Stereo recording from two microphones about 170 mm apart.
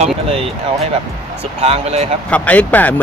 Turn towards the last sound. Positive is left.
turn(degrees=10)  # may be behind; listen again after turning